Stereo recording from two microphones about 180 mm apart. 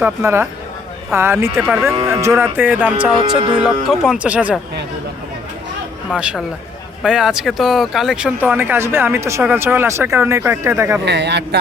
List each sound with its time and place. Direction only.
0.0 s speech: 15° right (ahead or behind)
6.1 s speech: 5° right (ahead or behind)
11.0 s a man's voice: 70° right (ahead or behind)